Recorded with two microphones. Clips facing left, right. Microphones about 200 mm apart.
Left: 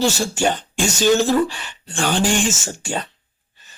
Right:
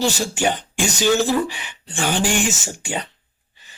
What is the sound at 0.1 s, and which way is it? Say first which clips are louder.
Speech: left 1 dB; 15° right (ahead or behind).